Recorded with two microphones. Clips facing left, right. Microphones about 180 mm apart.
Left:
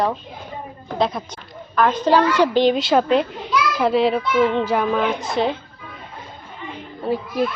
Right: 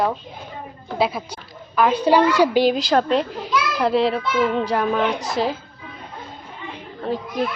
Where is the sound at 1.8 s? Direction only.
10° right (ahead or behind).